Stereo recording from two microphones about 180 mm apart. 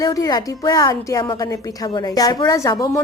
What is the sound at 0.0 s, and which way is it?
A woman's voice, 20° left (ahead or behind).